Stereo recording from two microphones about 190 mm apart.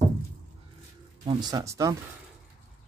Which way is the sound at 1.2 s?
20° right (ahead or behind).